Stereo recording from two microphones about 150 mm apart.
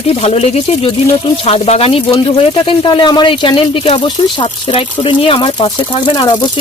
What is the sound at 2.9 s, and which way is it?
Speech, 30° left (ahead or behind).